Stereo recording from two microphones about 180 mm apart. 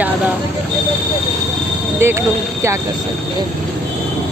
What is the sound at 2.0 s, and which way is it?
Speech, 15° right (ahead or behind).